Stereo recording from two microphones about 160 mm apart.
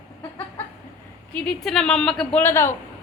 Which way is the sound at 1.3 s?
5° left (ahead or behind).